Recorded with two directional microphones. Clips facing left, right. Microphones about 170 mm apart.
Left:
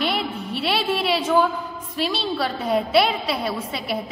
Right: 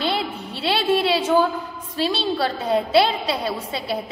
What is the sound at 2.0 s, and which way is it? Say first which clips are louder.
A man's voice: right 2 dB; 30° right (ahead or behind).